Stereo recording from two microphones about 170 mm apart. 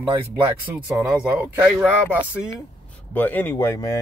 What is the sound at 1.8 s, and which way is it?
Speech, 10° right (ahead or behind).